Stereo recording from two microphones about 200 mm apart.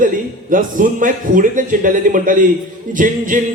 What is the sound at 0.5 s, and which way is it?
Speech, 40° right (ahead or behind).